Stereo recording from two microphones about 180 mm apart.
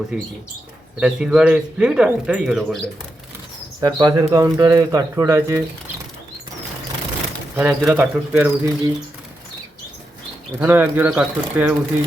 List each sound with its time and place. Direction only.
0.9 s speech: 5° right (ahead or behind)
3.8 s speech: 25° right (ahead or behind)
7.5 s speech: 10° right (ahead or behind)
10.6 s speech: 10° right (ahead or behind)